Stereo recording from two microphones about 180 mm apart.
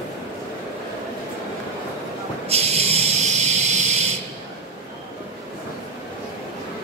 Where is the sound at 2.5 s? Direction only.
35° right (ahead or behind).